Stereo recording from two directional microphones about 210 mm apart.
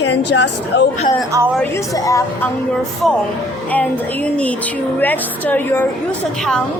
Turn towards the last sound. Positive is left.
turn(degrees=10)  # may be behind; listen again after turning